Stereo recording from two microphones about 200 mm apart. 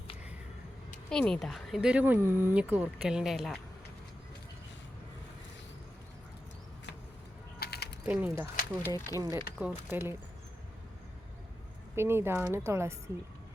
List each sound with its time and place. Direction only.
1.1 s speech: 5° left (ahead or behind)
7.6 s pulleys: 55° left (ahead or behind)
8.0 s speech: 10° right (ahead or behind)
8.8 s speech: 15° left (ahead or behind)
9.2 s speech: 10° right (ahead or behind)
11.9 s speech: 10° right (ahead or behind)